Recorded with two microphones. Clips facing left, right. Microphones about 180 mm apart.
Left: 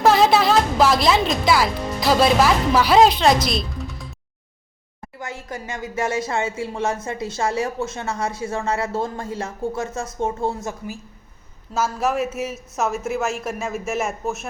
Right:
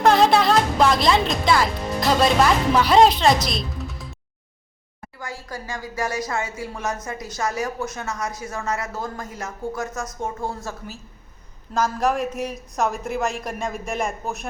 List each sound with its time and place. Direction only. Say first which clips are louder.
0.0 s speech: left 1 dB; 5° left (ahead or behind)
5.2 s a woman's voice: left 2 dB; 20° left (ahead or behind)
11.7 s a man's voice: even; 5° left (ahead or behind)